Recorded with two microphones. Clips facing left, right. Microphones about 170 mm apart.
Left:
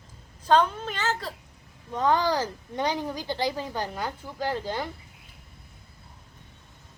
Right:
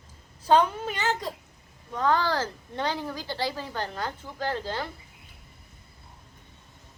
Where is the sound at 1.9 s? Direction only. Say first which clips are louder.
Left 1 dB; 20° left (ahead or behind).